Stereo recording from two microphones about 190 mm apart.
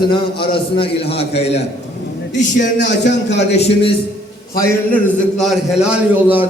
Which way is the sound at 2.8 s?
65° left (ahead or behind).